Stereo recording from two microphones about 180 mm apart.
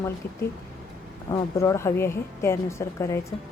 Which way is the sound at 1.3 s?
15° left (ahead or behind).